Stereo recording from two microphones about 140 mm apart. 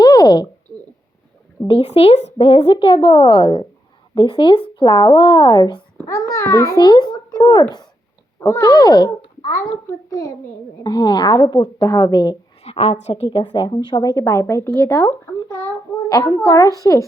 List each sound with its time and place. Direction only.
0.0 s a sound: 30° left (ahead or behind)
2.0 s a woman's voice: 45° left (ahead or behind); by 12.4 s 30° left (ahead or behind)
12.6 s a woman's voice: 45° left (ahead or behind); by 17.1 s 25° left (ahead or behind)